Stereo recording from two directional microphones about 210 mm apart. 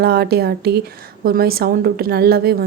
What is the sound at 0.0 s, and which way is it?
A woman's voice, 50° right (ahead or behind).